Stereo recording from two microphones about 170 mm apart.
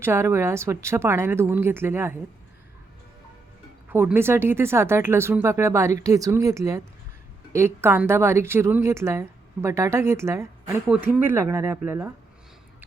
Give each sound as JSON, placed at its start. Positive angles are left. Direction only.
{"t": 0.0, "sound": "speech", "side_deg": -15}
{"t": 3.8, "sound": "speech", "side_deg": -10}